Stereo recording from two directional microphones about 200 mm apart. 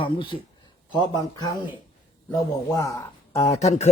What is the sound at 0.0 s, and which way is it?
Speech, 25° left (ahead or behind).